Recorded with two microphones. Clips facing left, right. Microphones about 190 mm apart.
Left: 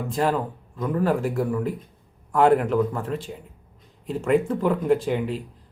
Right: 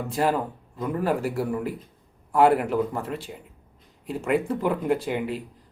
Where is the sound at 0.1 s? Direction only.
10° right (ahead or behind).